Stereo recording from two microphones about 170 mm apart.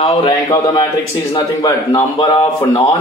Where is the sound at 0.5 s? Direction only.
20° left (ahead or behind).